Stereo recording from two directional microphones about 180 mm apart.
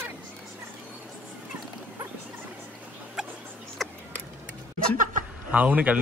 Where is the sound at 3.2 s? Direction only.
Centre (ahead or behind).